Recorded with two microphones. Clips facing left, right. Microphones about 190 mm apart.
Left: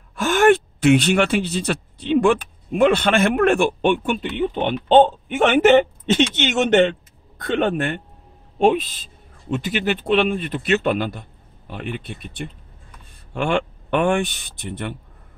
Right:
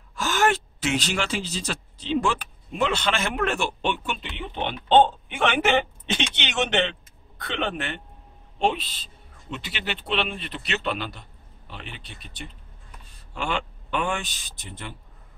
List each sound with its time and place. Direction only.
0.1 s a man's voice: 55° left (ahead or behind)